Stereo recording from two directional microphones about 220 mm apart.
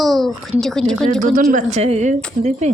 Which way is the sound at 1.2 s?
35° right (ahead or behind).